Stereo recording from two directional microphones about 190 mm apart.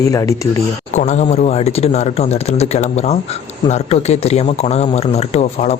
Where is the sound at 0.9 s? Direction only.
35° left (ahead or behind).